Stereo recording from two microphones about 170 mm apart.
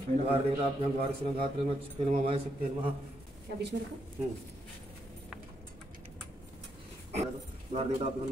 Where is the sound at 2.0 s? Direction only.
35° right (ahead or behind).